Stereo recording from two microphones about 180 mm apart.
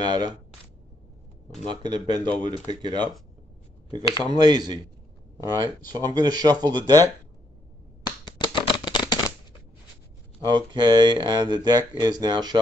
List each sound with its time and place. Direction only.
0.0 s speech: 25° right (ahead or behind)
1.7 s speech: 25° right (ahead or behind)
8.4 s a sound: 25° left (ahead or behind)
10.4 s speech: 25° right (ahead or behind)